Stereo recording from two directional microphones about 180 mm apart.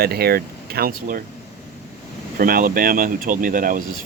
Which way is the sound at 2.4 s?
55° right (ahead or behind).